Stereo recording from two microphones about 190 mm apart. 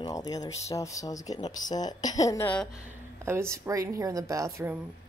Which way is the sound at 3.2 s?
15° right (ahead or behind).